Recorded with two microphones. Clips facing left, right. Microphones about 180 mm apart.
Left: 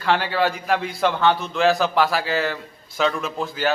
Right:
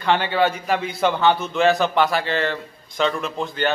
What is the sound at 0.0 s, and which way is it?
A man's voice, centre (ahead or behind).